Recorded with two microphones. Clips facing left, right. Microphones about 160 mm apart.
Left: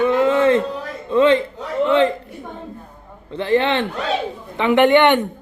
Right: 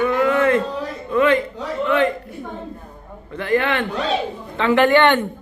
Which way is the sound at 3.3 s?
25° left (ahead or behind).